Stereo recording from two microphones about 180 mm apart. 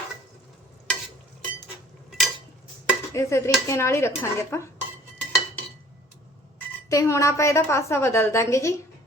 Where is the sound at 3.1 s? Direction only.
15° left (ahead or behind).